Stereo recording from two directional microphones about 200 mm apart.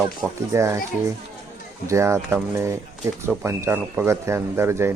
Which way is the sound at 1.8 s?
15° right (ahead or behind).